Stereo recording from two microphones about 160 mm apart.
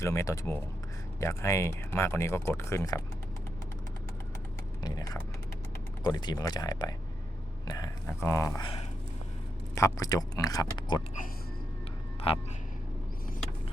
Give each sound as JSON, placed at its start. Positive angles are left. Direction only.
{"t": 0.0, "sound": "speech", "side_deg": 20}
{"t": 4.8, "sound": "speech", "side_deg": 25}
{"t": 9.7, "sound": "speech", "side_deg": 20}
{"t": 12.3, "sound": "speech", "side_deg": 35}